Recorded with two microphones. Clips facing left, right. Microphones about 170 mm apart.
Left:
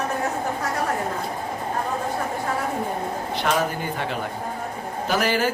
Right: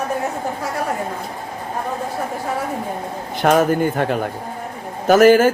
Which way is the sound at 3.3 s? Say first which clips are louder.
Right 9 dB; 50° right (ahead or behind).